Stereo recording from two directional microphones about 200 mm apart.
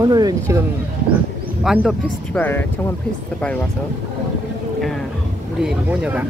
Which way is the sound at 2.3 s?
10° left (ahead or behind).